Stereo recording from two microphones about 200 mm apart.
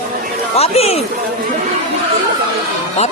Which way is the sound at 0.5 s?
30° left (ahead or behind).